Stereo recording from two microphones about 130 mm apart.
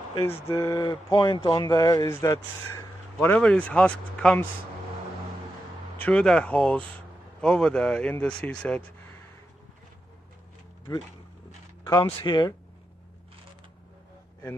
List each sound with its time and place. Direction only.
0.3 s speech: 25° left (ahead or behind)
2.7 s a sound: 15° left (ahead or behind)
3.4 s speech: 5° left (ahead or behind)
5.9 s speech: 5° left (ahead or behind)
11.8 s speech: 30° left (ahead or behind)